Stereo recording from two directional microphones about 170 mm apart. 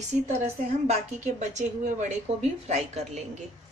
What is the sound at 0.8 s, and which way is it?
A woman's voice, 45° right (ahead or behind).